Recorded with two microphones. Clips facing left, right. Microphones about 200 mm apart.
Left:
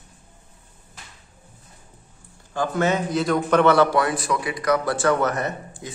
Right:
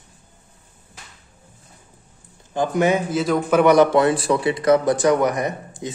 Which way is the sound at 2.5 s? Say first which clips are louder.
Right 3 dB; 15° right (ahead or behind).